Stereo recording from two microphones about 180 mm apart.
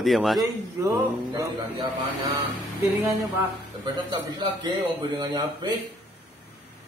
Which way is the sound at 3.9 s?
25° right (ahead or behind).